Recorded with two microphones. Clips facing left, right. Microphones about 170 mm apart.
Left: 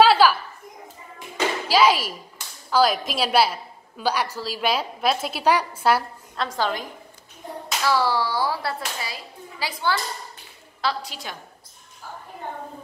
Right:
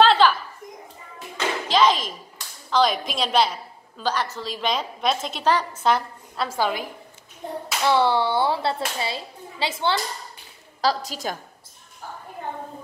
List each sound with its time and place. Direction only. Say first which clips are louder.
0.0 s a sound: left 1 dB; 5° left (ahead or behind)
1.3 s clapping: left 1 dB; 10° left (ahead or behind)
2.7 s a woman's voice: left 1 dB; 5° left (ahead or behind)
6.3 s a woman's voice: right 1 dB; 5° right (ahead or behind)
7.8 s a child's voice: right 3 dB; 25° right (ahead or behind)
10.8 s a woman's voice: right 4 dB; 40° right (ahead or behind)